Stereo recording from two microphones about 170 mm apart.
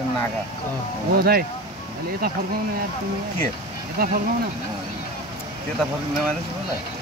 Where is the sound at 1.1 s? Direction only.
65° right (ahead or behind).